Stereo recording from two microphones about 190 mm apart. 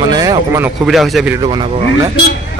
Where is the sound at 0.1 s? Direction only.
20° right (ahead or behind).